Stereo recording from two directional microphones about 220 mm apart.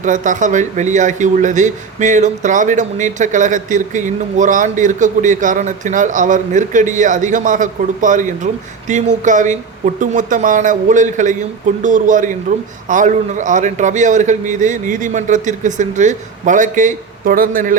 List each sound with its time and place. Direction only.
0.0 s speech: 35° right (ahead or behind)